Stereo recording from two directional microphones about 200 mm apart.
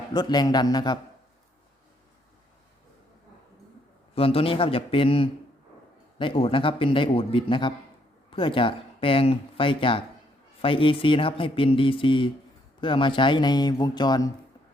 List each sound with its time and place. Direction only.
0.1 s speech: 20° left (ahead or behind)
4.1 s speech: 30° left (ahead or behind)